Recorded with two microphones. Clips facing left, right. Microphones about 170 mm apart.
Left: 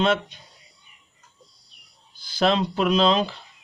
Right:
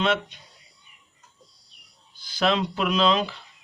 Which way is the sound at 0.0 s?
35° left (ahead or behind).